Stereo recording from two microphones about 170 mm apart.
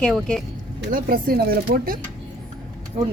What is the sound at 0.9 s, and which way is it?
Speech, 55° right (ahead or behind).